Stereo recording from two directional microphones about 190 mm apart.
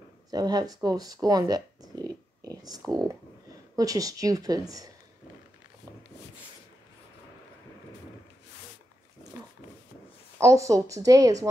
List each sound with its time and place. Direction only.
0.3 s speech: 20° right (ahead or behind)
10.4 s speech: 15° right (ahead or behind)